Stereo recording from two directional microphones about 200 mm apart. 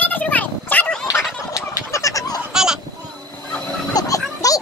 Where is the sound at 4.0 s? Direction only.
15° left (ahead or behind).